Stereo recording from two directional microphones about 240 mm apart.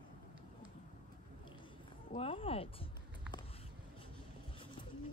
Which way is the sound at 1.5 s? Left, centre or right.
Left.